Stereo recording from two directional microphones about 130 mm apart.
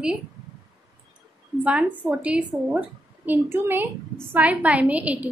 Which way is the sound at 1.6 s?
10° right (ahead or behind).